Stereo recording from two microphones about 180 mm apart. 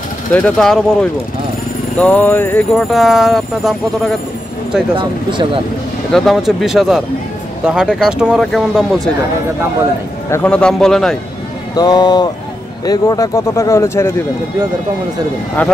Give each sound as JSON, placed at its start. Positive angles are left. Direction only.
{"t": 0.3, "sound": "speech", "side_deg": 5}
{"t": 2.0, "sound": "speech", "side_deg": 10}
{"t": 4.9, "sound": "speech", "side_deg": -30}
{"t": 6.1, "sound": "speech", "side_deg": 0}
{"t": 10.3, "sound": "speech", "side_deg": 5}
{"t": 11.7, "sound": "speech", "side_deg": 20}